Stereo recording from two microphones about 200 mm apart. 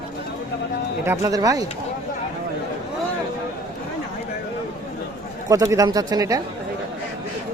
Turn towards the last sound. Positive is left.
turn(degrees=-20)  # may be behind; listen again after turning